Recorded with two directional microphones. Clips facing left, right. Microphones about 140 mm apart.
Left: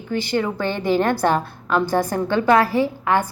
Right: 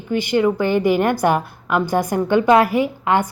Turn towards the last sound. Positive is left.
turn(degrees=-20)  # may be behind; listen again after turning